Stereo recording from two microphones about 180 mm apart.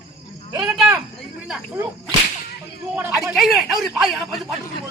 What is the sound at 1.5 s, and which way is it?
Snake, 5° right (ahead or behind).